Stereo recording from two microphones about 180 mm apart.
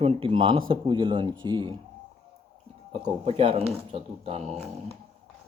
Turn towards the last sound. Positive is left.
turn(degrees=-35)  # may be behind; listen again after turning